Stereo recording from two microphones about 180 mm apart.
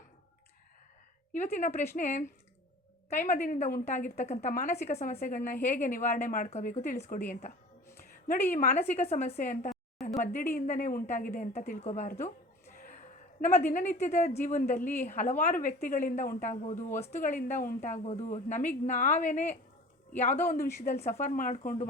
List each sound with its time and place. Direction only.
1.3 s speech: 40° left (ahead or behind)
8.0 s a sound: 50° left (ahead or behind)
8.4 s speech: 45° left (ahead or behind)
12.7 s a sound: 50° left (ahead or behind)
13.4 s speech: 45° left (ahead or behind)
16.9 s speech: 10° left (ahead or behind)
17.5 s speech: 45° left (ahead or behind)
20.8 s speech: 40° left (ahead or behind)